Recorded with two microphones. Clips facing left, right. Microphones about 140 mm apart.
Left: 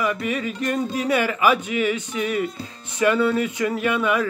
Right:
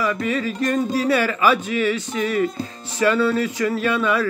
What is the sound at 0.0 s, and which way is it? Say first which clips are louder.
Speech: right 2 dB; 15° left (ahead or behind).